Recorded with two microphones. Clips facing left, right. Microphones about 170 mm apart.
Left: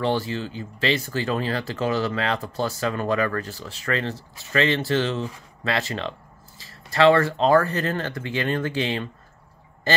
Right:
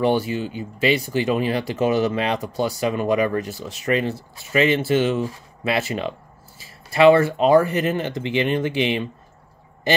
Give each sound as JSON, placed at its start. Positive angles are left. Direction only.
{"t": 0.0, "sound": "speech", "side_deg": -15}